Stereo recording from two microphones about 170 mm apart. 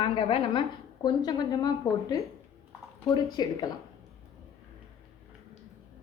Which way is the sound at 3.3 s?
20° left (ahead or behind).